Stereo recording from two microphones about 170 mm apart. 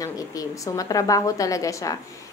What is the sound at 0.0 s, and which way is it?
Speech, 20° left (ahead or behind).